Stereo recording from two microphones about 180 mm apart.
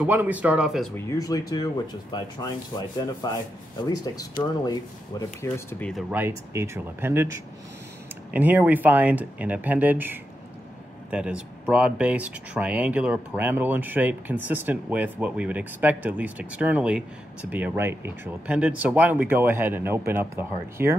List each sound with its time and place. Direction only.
0.0 s speech: 10° right (ahead or behind)
0.9 s speech: 15° left (ahead or behind)
3.8 s speech: 20° left (ahead or behind)
6.0 s speech: 10° right (ahead or behind)